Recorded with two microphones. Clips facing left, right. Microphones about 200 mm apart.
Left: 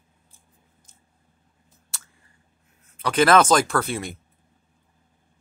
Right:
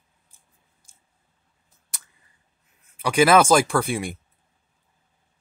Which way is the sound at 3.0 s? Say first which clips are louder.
Right 1 dB; 10° right (ahead or behind).